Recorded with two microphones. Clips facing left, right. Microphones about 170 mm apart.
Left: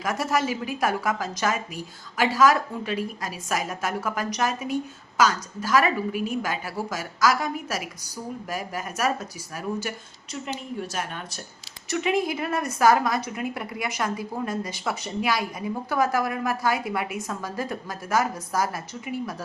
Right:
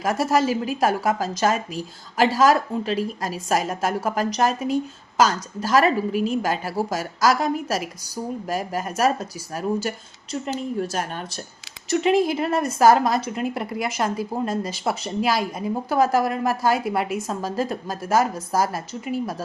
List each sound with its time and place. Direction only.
0.0 s speech: 30° right (ahead or behind)
10.4 s a woman's voice: 40° right (ahead or behind)